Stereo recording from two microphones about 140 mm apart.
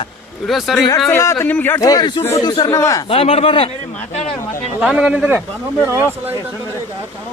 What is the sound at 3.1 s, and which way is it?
Speech, 45° left (ahead or behind).